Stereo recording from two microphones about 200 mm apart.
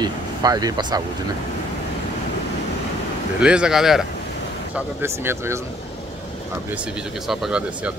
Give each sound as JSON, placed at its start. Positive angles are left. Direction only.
{"t": 0.0, "sound": "speech", "side_deg": -20}
{"t": 3.3, "sound": "speech", "side_deg": -5}
{"t": 7.2, "sound": "speech", "side_deg": -5}